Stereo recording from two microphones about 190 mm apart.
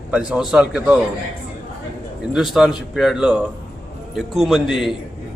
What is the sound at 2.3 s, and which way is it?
A man's voice, centre (ahead or behind).